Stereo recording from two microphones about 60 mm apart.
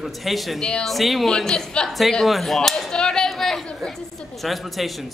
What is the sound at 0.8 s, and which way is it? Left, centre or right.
A child's voice, centre.